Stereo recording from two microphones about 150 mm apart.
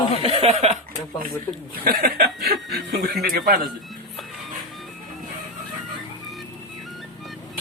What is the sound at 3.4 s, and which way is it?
Speech, 80° right.